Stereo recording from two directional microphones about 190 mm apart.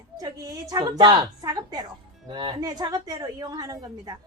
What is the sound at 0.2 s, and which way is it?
Speech, 20° right (ahead or behind).